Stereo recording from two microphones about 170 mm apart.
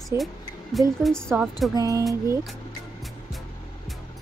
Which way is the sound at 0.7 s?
Centre (ahead or behind).